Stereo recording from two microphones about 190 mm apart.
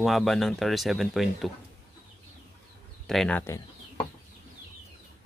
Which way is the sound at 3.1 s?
5° left (ahead or behind).